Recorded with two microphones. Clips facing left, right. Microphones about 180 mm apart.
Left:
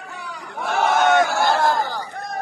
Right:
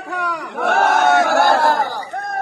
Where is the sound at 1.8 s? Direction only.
10° right (ahead or behind).